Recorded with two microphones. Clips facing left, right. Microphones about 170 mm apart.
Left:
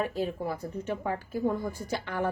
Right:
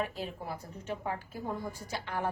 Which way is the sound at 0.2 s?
55° left (ahead or behind).